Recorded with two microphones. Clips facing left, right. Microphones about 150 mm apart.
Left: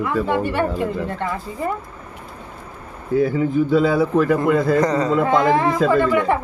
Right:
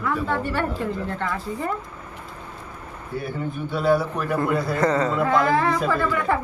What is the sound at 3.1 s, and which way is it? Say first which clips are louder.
Speech: left 12 dB; 90° left.